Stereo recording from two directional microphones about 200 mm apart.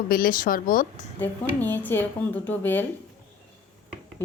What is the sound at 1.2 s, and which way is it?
Speech, 10° left (ahead or behind).